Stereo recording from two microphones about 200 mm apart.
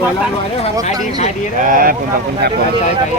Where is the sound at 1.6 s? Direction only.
45° right (ahead or behind).